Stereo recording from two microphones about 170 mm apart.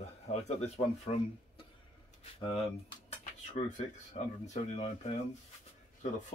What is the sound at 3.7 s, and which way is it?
Speech, 45° left (ahead or behind).